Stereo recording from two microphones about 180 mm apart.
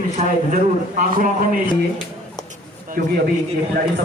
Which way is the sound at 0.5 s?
50° right (ahead or behind).